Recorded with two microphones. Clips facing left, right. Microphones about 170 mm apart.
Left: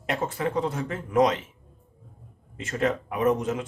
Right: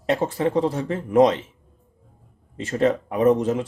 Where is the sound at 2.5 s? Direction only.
30° right (ahead or behind).